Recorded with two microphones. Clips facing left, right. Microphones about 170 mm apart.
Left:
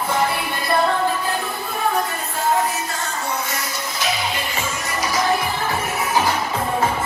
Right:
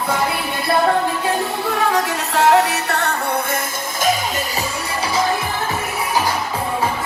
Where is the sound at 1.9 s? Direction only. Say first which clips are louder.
Right 4 dB; 75° right (ahead or behind).